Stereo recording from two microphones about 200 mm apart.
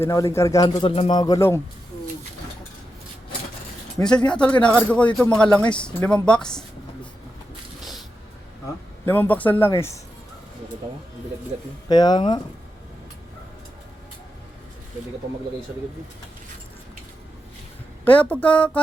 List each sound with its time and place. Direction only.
0.0 s speech: 15° left (ahead or behind)
4.3 s speech: 5° left (ahead or behind)
9.0 s speech: 10° left (ahead or behind)
11.9 s speech: 20° left (ahead or behind)
18.0 s speech: 5° left (ahead or behind)